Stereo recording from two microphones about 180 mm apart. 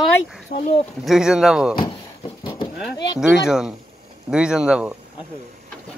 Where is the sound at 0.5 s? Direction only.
50° left (ahead or behind).